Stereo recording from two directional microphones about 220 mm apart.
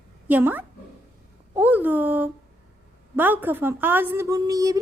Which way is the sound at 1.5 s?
10° right (ahead or behind).